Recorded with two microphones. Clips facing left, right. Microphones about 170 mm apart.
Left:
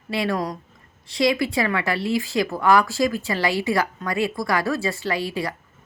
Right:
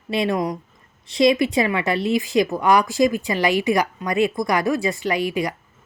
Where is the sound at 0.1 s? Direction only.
20° right (ahead or behind).